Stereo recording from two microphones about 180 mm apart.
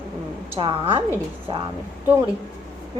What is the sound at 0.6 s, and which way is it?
Speech, 30° right (ahead or behind).